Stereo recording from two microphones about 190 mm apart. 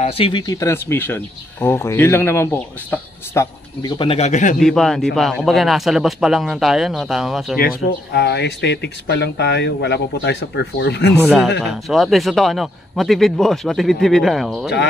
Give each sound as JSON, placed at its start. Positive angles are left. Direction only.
{"t": 0.0, "sound": "speech", "side_deg": 25}
{"t": 4.0, "sound": "speech", "side_deg": 30}
{"t": 4.6, "sound": "a man's voice", "side_deg": 0}
{"t": 7.5, "sound": "speech", "side_deg": 55}
{"t": 11.1, "sound": "a man's voice", "side_deg": 0}